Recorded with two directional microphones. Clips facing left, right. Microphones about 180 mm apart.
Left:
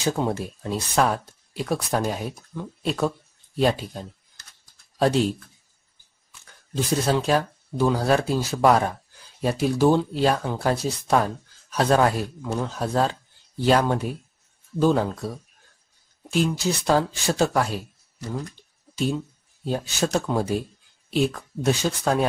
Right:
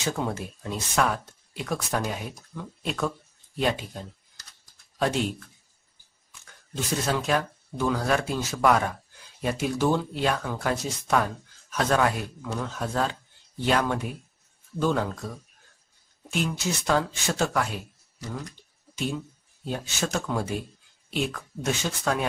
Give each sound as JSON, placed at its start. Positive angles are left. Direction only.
{"t": 0.0, "sound": "speech", "side_deg": 30}
{"t": 5.0, "sound": "speech", "side_deg": 35}
{"t": 6.7, "sound": "speech", "side_deg": 30}
{"t": 18.9, "sound": "speech", "side_deg": 35}